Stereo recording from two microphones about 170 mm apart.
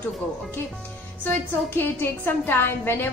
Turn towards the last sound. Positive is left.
turn(degrees=10)  # may be behind; listen again after turning